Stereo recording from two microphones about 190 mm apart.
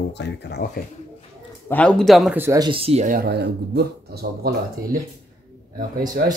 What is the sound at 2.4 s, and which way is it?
Speech, 15° right (ahead or behind).